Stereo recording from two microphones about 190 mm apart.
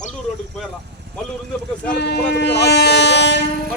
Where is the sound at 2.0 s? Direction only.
60° left (ahead or behind).